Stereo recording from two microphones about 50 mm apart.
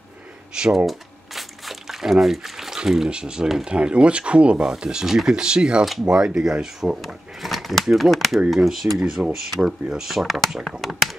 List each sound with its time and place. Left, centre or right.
0.6 s speech: centre
0.8 s crumpling: centre
3.6 s speech: centre
7.1 s speech: centre
8.5 s speech: centre